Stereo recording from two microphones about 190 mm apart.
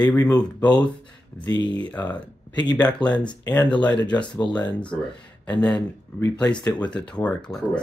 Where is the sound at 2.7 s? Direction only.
20° left (ahead or behind).